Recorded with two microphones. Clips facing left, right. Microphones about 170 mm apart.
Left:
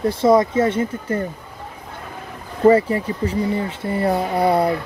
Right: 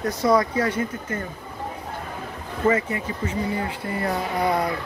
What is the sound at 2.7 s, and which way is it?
Speech, 35° left (ahead or behind).